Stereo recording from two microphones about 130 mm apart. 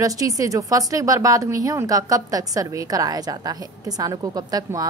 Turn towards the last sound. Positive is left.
turn(degrees=-30)  # may be behind; listen again after turning